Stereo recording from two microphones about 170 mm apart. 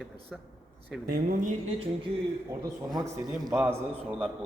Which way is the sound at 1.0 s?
55° right (ahead or behind).